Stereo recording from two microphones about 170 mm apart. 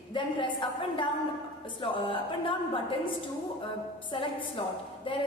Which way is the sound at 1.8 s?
30° left (ahead or behind).